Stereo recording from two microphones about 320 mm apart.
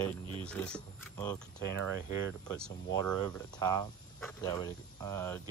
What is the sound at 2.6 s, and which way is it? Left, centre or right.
Speech, centre.